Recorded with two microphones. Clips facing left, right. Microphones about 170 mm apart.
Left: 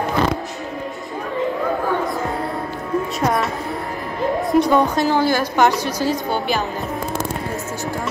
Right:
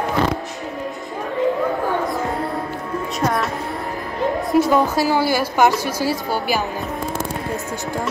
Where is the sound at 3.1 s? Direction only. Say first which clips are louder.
Right 1 dB; centre (ahead or behind).